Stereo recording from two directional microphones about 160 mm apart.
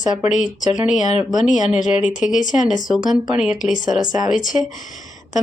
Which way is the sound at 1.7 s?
50° left (ahead or behind).